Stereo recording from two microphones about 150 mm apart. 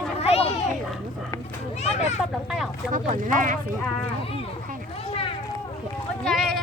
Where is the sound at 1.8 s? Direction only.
45° left (ahead or behind).